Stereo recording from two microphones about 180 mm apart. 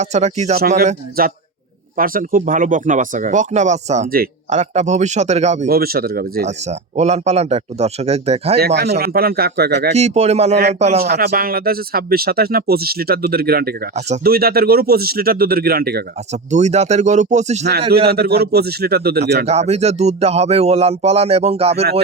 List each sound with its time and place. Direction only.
0.0 s speech: 40° right (ahead or behind)
1.2 s speech: 55° right (ahead or behind); by 4.1 s 40° right (ahead or behind)
4.1 s speech: 55° right (ahead or behind)
4.5 s speech: 40° right (ahead or behind)
5.6 s speech: 55° right (ahead or behind)
6.7 s speech: 40° right (ahead or behind)
8.5 s speech: 60° right (ahead or behind)
9.9 s speech: 35° right (ahead or behind)
10.5 s speech: 65° right (ahead or behind)
10.8 s speech: 40° right (ahead or behind)
11.0 s speech: 60° right (ahead or behind)
16.3 s speech: 40° right (ahead or behind)
17.9 s speech: 60° right (ahead or behind)
19.5 s speech: 35° right (ahead or behind)